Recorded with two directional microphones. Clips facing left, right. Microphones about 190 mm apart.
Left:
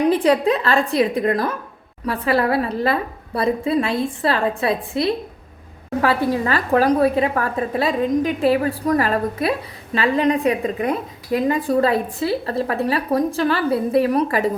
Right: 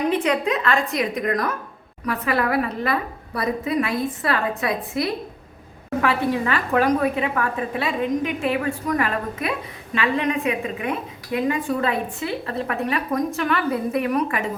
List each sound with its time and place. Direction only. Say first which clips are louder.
0.1 s a woman's voice: left 5 dB; 35° left (ahead or behind)